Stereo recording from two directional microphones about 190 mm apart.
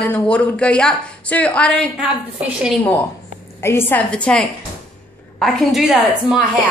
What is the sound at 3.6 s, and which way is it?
A woman's voice, 10° left (ahead or behind).